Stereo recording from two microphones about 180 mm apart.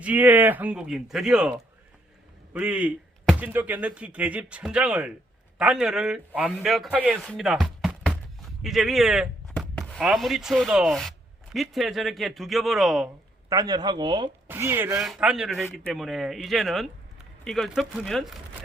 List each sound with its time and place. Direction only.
0.0 s a man's voice: 10° right (ahead or behind)
7.3 s music: centre (ahead or behind)
8.6 s speech: centre (ahead or behind)
13.5 s speech: 20° right (ahead or behind)
14.4 s speech: 15° right (ahead or behind)